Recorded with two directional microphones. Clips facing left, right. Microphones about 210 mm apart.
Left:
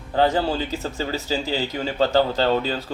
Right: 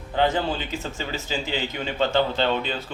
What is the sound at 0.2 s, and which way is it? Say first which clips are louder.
Speech: left 3 dB; 35° left (ahead or behind).